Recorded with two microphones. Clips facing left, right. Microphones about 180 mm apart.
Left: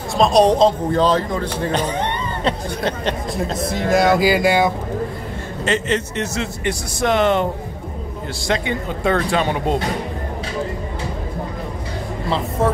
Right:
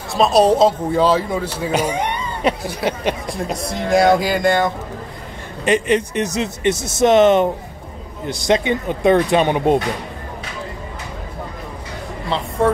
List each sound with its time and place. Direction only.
0.1 s a man's voice: 5° right (ahead or behind)
3.5 s speech: centre (ahead or behind)
5.7 s speech: 15° right (ahead or behind)